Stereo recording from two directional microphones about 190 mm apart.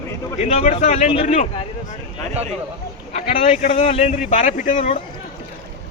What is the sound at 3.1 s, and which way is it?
Speech, 35° left (ahead or behind).